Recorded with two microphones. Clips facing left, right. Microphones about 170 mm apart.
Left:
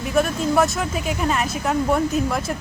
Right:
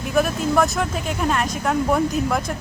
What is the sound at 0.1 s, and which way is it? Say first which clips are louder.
Speech: even; centre (ahead or behind).